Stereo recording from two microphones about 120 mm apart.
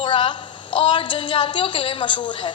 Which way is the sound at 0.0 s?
45° left (ahead or behind).